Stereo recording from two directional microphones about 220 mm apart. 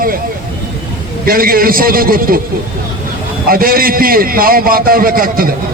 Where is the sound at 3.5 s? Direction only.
40° right (ahead or behind).